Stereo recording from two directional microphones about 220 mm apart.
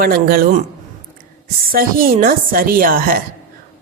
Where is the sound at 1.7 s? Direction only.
40° right (ahead or behind).